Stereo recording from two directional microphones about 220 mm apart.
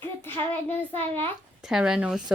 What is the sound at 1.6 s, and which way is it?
Speech, centre (ahead or behind).